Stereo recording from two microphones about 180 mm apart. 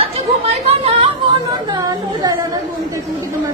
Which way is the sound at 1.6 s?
20° right (ahead or behind).